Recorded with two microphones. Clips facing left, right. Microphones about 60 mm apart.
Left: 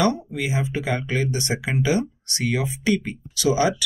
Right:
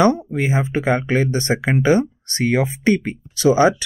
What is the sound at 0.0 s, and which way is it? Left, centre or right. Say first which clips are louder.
Speech: right 6 dB; right.